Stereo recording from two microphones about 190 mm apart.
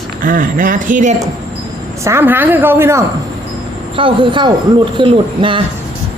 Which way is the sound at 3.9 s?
25° right (ahead or behind).